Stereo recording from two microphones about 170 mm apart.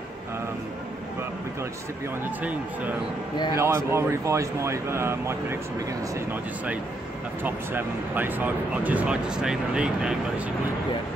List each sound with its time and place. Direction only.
3.5 s speech: 15° right (ahead or behind)
7.4 s speech: 10° right (ahead or behind)